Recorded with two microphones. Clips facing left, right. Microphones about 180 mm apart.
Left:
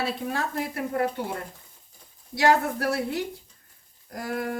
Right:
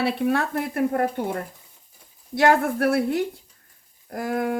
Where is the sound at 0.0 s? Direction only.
65° right (ahead or behind).